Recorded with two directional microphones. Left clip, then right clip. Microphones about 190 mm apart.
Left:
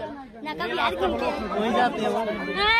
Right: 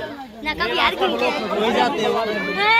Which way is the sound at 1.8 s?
60° left (ahead or behind).